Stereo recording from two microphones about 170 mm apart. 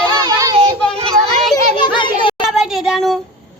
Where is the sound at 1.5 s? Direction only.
25° left (ahead or behind).